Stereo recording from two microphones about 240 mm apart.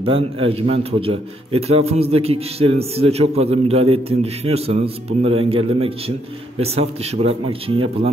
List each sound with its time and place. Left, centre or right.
0.0 s a man's voice: right